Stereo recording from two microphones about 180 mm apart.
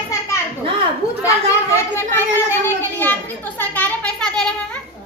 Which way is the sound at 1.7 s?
15° left (ahead or behind).